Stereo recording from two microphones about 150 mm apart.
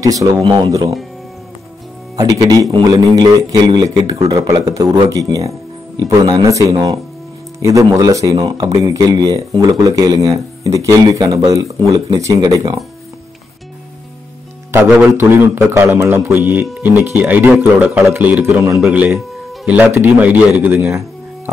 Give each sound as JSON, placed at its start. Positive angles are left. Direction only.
{"t": 0.0, "sound": "a man's voice", "side_deg": -20}
{"t": 0.4, "sound": "a man's voice", "side_deg": -35}
{"t": 2.1, "sound": "a man's voice", "side_deg": -25}
{"t": 14.7, "sound": "speech", "side_deg": -15}
{"t": 18.8, "sound": "speech", "side_deg": -5}